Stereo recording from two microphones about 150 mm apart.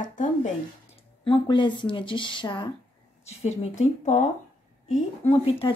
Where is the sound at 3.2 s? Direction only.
45° left (ahead or behind).